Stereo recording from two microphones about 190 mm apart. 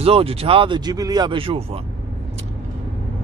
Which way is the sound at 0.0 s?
30° right (ahead or behind).